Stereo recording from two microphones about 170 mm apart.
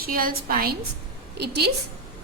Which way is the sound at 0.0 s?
60° right (ahead or behind).